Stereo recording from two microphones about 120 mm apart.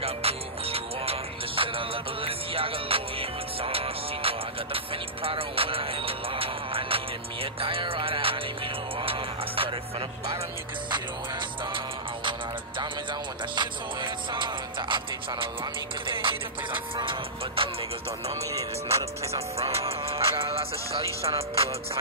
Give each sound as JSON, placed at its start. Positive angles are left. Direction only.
{"t": 0.0, "sound": "music", "side_deg": -55}
{"t": 13.6, "sound": "music", "side_deg": -40}
{"t": 16.1, "sound": "music", "side_deg": -45}
{"t": 18.5, "sound": "music", "side_deg": -25}
{"t": 19.6, "sound": "music", "side_deg": -55}